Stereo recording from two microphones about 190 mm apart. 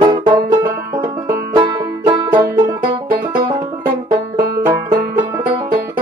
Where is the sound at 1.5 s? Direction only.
25° right (ahead or behind).